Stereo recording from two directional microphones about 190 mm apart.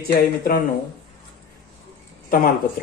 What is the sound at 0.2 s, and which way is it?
Speech, 50° left (ahead or behind).